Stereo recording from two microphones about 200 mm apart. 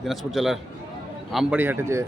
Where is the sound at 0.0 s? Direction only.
Centre (ahead or behind).